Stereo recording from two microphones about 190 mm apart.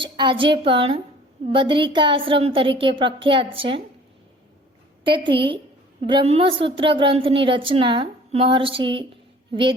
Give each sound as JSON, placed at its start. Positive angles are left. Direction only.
{"t": 0.0, "sound": "a woman's voice", "side_deg": -25}
{"t": 5.0, "sound": "a woman's voice", "side_deg": -25}